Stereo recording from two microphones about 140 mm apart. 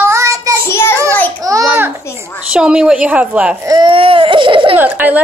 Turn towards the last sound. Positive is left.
turn(degrees=-10)  # may be behind; listen again after turning